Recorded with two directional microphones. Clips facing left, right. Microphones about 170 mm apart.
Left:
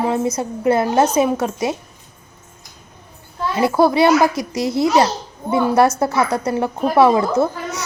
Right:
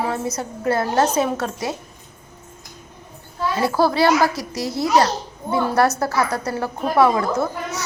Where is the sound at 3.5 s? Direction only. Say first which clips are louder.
Left 4 dB; 20° left (ahead or behind).